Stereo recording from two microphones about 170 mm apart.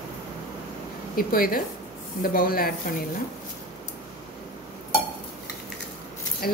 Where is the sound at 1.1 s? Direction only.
60° left (ahead or behind).